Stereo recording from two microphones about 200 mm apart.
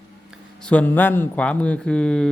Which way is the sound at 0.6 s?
5° left (ahead or behind).